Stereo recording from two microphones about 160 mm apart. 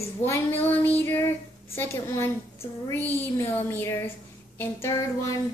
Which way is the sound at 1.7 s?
15° left (ahead or behind).